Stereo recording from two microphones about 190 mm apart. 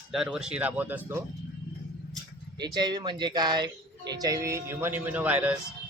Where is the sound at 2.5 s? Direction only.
20° right (ahead or behind).